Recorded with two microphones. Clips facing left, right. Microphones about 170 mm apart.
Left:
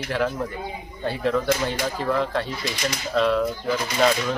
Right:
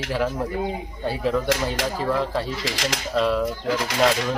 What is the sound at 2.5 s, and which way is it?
Speech, 90° right.